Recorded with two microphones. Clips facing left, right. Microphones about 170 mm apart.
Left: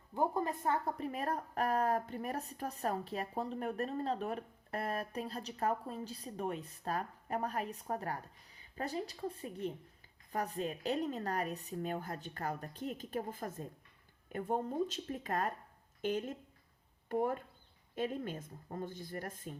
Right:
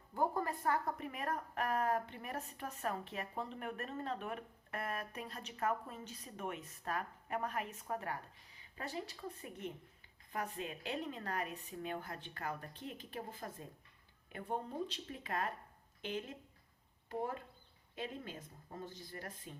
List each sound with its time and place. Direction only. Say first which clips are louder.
0.1 s a woman's voice: left 2 dB; 20° left (ahead or behind); by 19.5 s 50° left (ahead or behind)